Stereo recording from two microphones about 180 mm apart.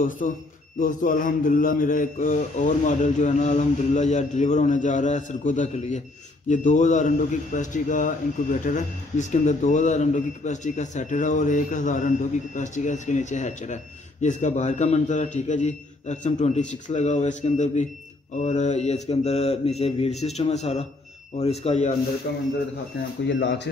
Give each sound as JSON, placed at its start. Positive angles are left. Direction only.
{"t": 0.7, "sound": "a man's voice", "side_deg": 45}
{"t": 23.2, "sound": "speech", "side_deg": 75}